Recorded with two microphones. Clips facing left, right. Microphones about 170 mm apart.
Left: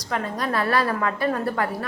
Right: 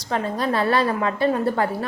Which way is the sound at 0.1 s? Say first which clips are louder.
Right 3 dB; 30° right (ahead or behind).